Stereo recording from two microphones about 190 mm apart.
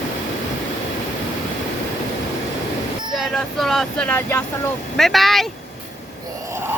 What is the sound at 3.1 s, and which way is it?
Speech, centre (ahead or behind).